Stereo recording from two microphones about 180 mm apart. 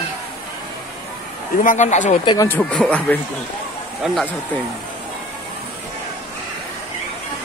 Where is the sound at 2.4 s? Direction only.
10° left (ahead or behind).